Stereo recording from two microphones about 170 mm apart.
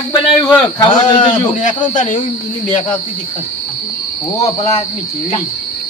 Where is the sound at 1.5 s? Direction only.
45° left (ahead or behind).